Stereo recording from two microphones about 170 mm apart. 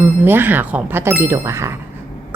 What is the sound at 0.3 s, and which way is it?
A woman's voice, 10° right (ahead or behind).